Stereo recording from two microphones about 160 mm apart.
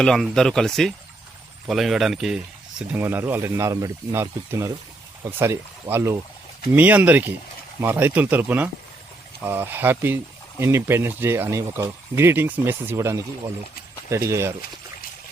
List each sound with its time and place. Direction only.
0.0 s speech: 5° left (ahead or behind); by 14.5 s 15° right (ahead or behind)